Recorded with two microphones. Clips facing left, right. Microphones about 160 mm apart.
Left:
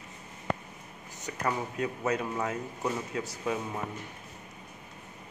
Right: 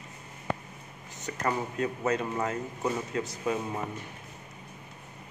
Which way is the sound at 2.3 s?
5° right (ahead or behind).